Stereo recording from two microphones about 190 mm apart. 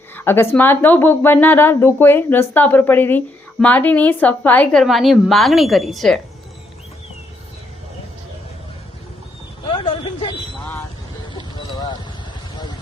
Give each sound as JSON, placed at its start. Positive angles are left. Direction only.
{"t": 0.1, "sound": "a woman's voice", "side_deg": 10}
{"t": 9.7, "sound": "a sound", "side_deg": 25}
{"t": 11.5, "sound": "clip-clop", "side_deg": 20}